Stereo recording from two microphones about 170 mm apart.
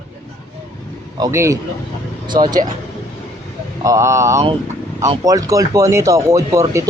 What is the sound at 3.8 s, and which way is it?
Speech, 20° right (ahead or behind).